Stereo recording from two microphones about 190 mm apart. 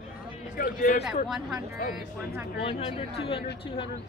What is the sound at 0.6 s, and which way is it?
Speech, 40° left (ahead or behind).